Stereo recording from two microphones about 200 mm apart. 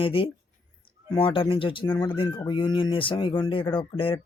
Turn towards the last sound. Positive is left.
turn(degrees=25)  # may be behind; listen again after turning